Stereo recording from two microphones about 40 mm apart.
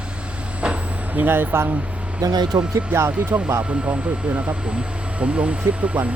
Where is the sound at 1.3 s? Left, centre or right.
Right.